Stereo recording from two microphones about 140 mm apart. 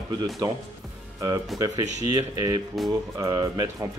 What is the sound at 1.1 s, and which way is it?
Speech, 25° right (ahead or behind).